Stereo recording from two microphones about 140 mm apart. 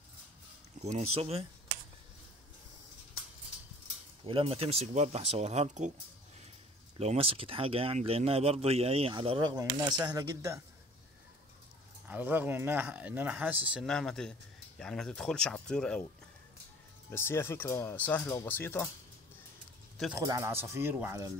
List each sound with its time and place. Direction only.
0.7 s speech: 50° right (ahead or behind)
4.3 s speech: 45° right (ahead or behind)
7.0 s speech: 45° right (ahead or behind)
9.5 s speech: 25° right (ahead or behind)
12.1 s speech: 10° right (ahead or behind)
13.7 s speech: 5° left (ahead or behind)
17.1 s speech: 20° left (ahead or behind)
20.2 s speech: 20° right (ahead or behind)